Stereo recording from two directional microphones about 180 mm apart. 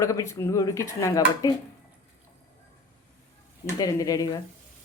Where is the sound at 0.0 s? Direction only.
15° left (ahead or behind).